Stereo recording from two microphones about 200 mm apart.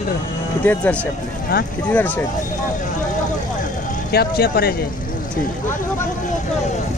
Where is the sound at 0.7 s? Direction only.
10° left (ahead or behind).